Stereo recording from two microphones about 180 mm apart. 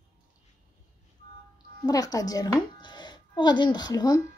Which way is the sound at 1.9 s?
20° left (ahead or behind).